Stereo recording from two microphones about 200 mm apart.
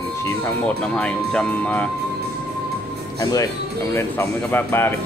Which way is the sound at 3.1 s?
15° left (ahead or behind).